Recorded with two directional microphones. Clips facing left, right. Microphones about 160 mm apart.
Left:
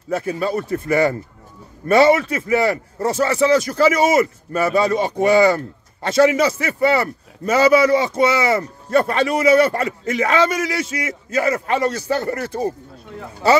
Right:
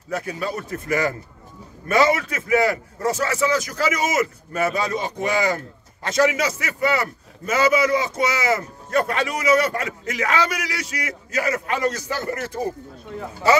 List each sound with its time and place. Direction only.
0.1 s a man's voice: 30° left (ahead or behind)